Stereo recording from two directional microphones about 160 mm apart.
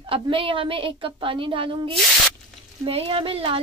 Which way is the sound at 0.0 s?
35° right (ahead or behind).